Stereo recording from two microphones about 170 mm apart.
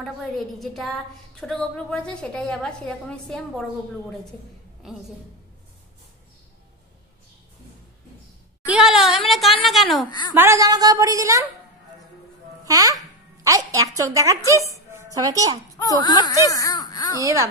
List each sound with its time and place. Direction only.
0.6 s a woman's voice: centre (ahead or behind)
4.8 s a woman's voice: centre (ahead or behind)
8.6 s a woman's voice: 5° right (ahead or behind)
10.3 s a woman's voice: 15° right (ahead or behind)
12.6 s a child's voice: 20° right (ahead or behind)
15.8 s speech: 25° left (ahead or behind)
17.2 s a woman's voice: 20° right (ahead or behind)